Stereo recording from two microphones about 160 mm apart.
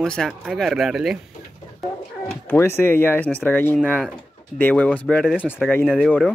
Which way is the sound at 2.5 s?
15° left (ahead or behind).